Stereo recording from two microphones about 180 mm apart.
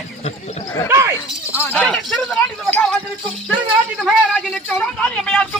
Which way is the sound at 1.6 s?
10° left (ahead or behind).